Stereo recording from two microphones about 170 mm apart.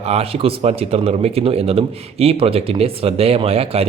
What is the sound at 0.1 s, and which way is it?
Speech, 35° right (ahead or behind).